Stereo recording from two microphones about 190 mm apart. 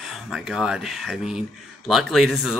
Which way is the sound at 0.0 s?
Centre (ahead or behind).